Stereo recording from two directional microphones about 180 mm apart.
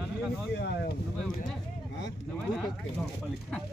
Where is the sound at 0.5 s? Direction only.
70° left (ahead or behind).